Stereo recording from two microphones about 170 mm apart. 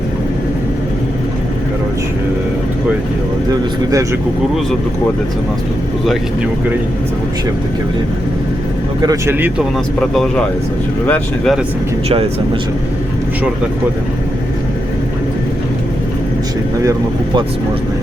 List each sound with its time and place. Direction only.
9.0 s speech: 20° right (ahead or behind)
10.0 s speech: 5° left (ahead or behind)
12.0 s speech: 35° right (ahead or behind)